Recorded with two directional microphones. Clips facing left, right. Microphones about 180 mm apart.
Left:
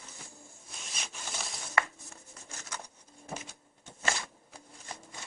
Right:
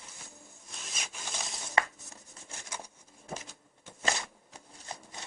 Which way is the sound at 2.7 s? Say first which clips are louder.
Even; 10° right (ahead or behind).